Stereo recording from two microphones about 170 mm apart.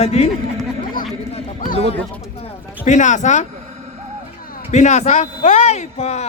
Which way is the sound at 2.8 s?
45° left (ahead or behind).